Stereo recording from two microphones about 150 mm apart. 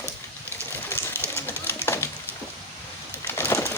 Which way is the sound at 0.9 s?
15° left (ahead or behind).